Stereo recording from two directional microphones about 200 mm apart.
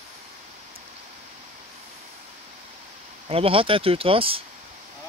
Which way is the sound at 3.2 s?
30° right (ahead or behind).